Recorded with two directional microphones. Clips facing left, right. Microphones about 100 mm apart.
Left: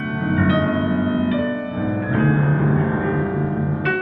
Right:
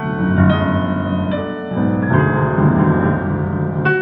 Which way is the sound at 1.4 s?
25° right (ahead or behind).